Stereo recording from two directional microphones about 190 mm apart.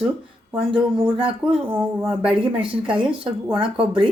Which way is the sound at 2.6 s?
25° right (ahead or behind).